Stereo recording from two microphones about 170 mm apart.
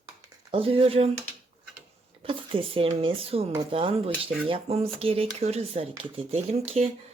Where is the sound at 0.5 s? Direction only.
35° right (ahead or behind).